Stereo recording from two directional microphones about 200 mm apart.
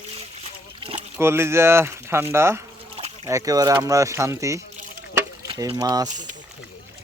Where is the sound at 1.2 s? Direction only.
10° right (ahead or behind).